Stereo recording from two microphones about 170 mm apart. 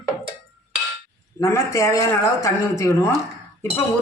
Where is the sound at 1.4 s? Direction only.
20° left (ahead or behind).